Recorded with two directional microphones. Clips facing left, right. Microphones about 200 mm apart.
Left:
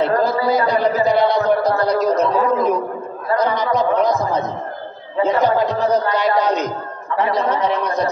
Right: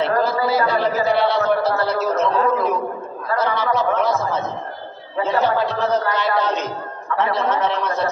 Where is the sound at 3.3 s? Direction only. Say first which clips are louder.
Left 3 dB; 15° left (ahead or behind).